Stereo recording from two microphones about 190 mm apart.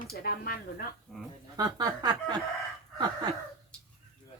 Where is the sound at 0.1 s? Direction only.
50° left (ahead or behind).